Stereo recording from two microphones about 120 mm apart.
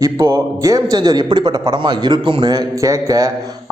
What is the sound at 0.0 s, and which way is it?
A man's voice, 30° right (ahead or behind).